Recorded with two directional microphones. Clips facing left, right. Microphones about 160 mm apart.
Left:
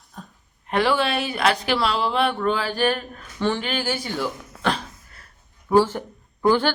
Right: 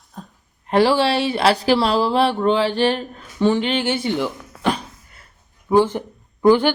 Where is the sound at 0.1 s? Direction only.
35° right (ahead or behind).